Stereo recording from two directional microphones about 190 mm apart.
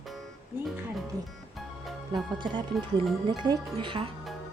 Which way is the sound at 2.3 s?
25° right (ahead or behind).